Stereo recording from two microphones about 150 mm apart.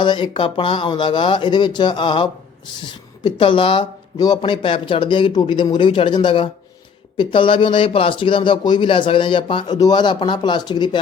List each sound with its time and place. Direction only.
0.0 s speech: 35° left (ahead or behind)